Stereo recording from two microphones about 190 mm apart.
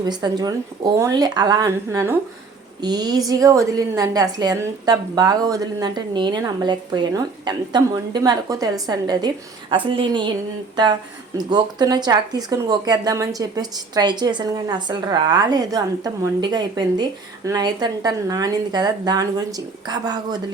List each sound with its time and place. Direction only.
0.0 s a woman's voice: 20° right (ahead or behind)
11.3 s a woman's voice: 20° right (ahead or behind)